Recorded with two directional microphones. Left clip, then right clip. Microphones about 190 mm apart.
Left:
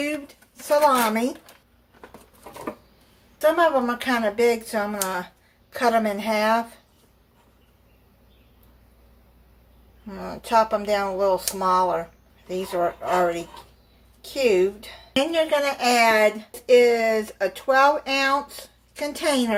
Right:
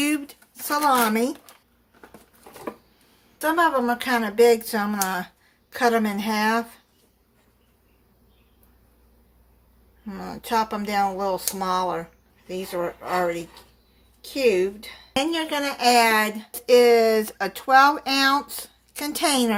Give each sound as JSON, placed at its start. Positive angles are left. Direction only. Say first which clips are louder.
{"t": 0.7, "sound": "speech", "louder": "left 2 dB", "side_deg": -50}
{"t": 3.4, "sound": "speech", "louder": "left 2 dB", "side_deg": -50}
{"t": 10.1, "sound": "speech", "louder": "left 3 dB", "side_deg": -40}
{"t": 15.2, "sound": "speech", "louder": "left 4 dB", "side_deg": -50}